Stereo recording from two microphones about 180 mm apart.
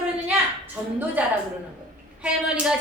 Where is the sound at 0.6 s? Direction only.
10° right (ahead or behind).